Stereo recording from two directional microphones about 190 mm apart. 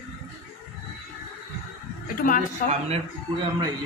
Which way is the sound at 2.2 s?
45° left (ahead or behind).